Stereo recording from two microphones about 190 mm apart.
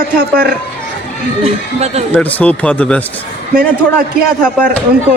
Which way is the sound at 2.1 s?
10° left (ahead or behind).